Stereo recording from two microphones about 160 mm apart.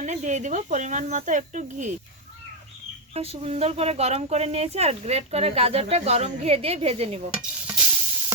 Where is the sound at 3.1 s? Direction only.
40° right (ahead or behind).